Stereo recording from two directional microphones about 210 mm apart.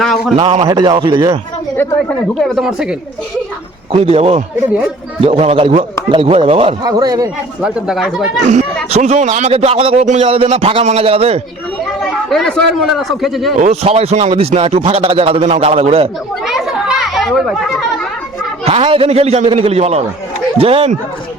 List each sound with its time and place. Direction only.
0.0 s a man's voice: centre (ahead or behind)
0.3 s a man's voice: 25° right (ahead or behind)
2.4 s a man's voice: centre (ahead or behind)
3.9 s a man's voice: 30° right (ahead or behind)
7.6 s a man's voice: centre (ahead or behind)
8.9 s a man's voice: 35° right (ahead or behind)
12.3 s a man's voice: 5° left (ahead or behind)
13.6 s a man's voice: 30° right (ahead or behind)
16.5 s a sound: centre (ahead or behind)
18.6 s a man's voice: 25° right (ahead or behind)